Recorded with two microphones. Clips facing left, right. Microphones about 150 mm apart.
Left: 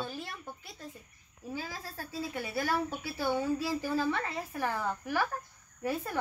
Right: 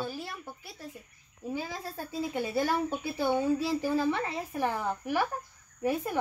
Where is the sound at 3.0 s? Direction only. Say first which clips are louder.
Right 4 dB; 20° right (ahead or behind).